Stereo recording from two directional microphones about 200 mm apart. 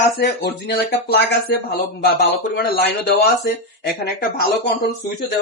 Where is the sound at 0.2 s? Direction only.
55° left (ahead or behind).